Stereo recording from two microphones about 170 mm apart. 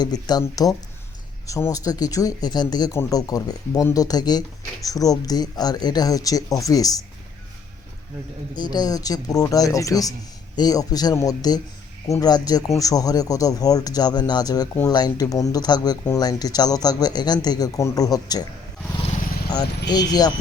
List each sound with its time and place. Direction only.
0.0 s speech: 25° left (ahead or behind)
8.7 s speech: 20° left (ahead or behind)
19.9 s speech: 25° left (ahead or behind)